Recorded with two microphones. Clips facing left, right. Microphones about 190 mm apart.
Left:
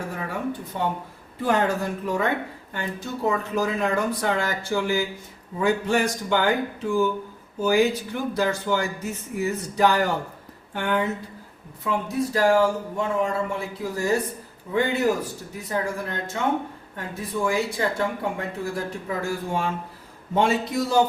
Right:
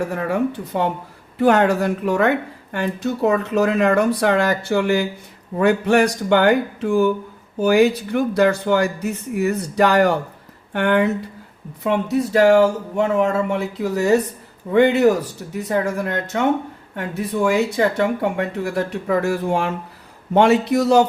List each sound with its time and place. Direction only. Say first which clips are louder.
0.1 s speech: right 8 dB; 70° right (ahead or behind)